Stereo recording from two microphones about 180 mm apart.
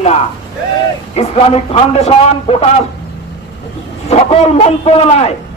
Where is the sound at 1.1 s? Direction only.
35° left (ahead or behind).